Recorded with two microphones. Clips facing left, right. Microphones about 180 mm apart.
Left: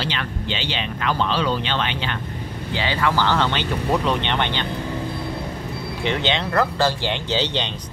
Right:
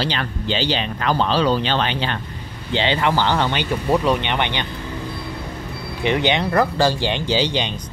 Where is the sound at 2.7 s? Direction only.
25° right (ahead or behind).